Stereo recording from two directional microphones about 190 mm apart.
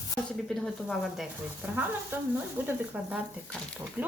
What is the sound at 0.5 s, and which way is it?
Speech, centre (ahead or behind).